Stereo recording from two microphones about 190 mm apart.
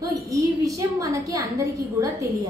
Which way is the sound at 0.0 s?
15° right (ahead or behind).